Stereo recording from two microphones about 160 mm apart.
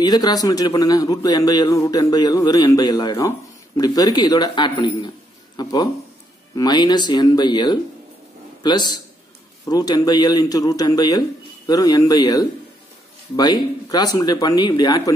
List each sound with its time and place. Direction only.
0.0 s a man's voice: 25° left (ahead or behind)